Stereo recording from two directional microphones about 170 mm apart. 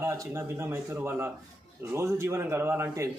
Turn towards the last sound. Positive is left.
turn(degrees=-15)  # may be behind; listen again after turning